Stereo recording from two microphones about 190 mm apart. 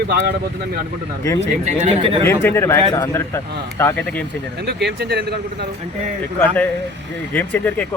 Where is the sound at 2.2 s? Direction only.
15° left (ahead or behind).